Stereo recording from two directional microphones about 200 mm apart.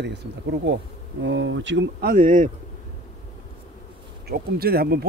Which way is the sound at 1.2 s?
65° right (ahead or behind).